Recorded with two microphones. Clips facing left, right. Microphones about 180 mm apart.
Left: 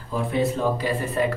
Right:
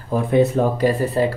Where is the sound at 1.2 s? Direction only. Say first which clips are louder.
Right 3 dB; 30° right (ahead or behind).